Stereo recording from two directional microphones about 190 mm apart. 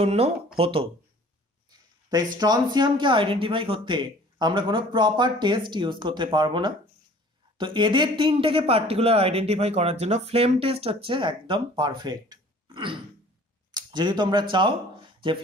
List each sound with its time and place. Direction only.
0.0 s speech: 30° right (ahead or behind)
1.7 s a sound: 20° right (ahead or behind)
2.3 s speech: 20° right (ahead or behind)